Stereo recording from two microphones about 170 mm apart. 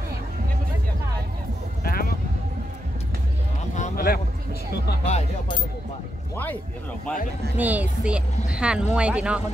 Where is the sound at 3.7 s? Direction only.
45° left (ahead or behind).